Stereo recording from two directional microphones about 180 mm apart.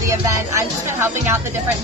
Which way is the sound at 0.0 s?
15° right (ahead or behind).